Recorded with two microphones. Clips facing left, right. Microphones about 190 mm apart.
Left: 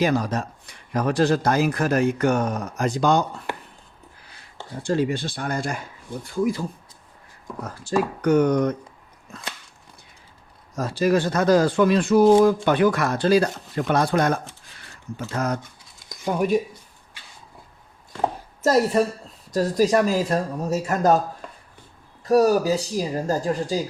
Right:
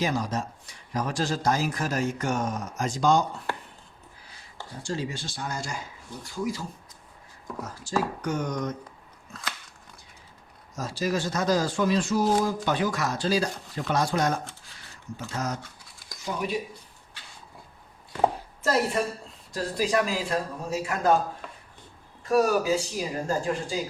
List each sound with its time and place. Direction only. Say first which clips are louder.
0.0 s speech: left 6 dB; 60° left (ahead or behind)
4.8 s speech: left 10 dB; 60° left (ahead or behind)
7.9 s speech: left 8 dB; 60° left (ahead or behind)
10.8 s speech: left 8 dB; 60° left (ahead or behind)
18.6 s speech: left 6 dB; 40° left (ahead or behind)
22.2 s speech: left 5 dB; 35° left (ahead or behind)